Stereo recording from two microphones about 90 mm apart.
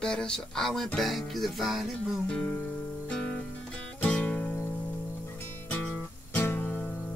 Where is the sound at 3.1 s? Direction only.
10° left (ahead or behind).